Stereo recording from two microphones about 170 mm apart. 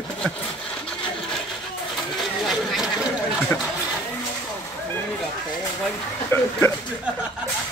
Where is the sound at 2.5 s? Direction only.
Centre (ahead or behind).